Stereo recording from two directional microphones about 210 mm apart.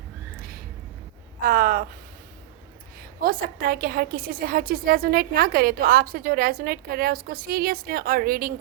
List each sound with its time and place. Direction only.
1.4 s a woman's voice: 40° right (ahead or behind)
3.2 s a woman's voice: 45° right (ahead or behind)